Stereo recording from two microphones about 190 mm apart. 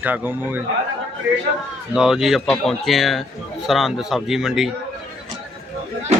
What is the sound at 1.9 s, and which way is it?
A man's voice, centre (ahead or behind).